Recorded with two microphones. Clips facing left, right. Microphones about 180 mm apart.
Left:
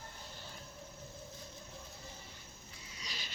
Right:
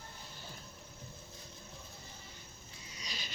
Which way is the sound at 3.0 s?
15° right (ahead or behind).